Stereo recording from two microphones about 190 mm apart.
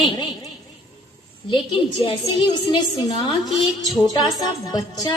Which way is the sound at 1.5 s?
25° left (ahead or behind).